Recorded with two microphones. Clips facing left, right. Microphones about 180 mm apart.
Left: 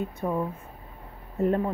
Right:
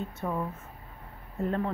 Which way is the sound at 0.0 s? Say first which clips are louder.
Left 4 dB; 15° left (ahead or behind).